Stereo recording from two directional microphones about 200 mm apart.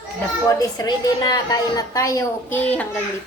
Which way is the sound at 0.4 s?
20° left (ahead or behind).